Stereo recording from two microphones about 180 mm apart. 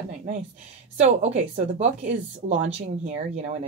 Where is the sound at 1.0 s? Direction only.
35° right (ahead or behind).